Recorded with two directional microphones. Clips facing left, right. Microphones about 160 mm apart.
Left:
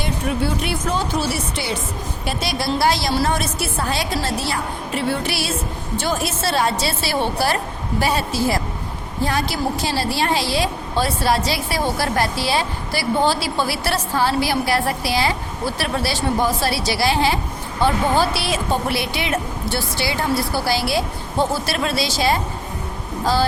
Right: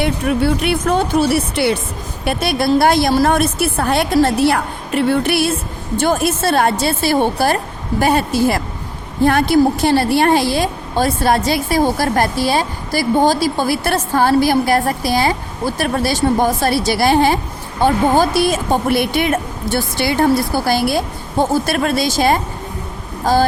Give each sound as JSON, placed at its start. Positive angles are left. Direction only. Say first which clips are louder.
{"t": 0.0, "sound": "a woman's voice", "louder": "right 6 dB", "side_deg": -65}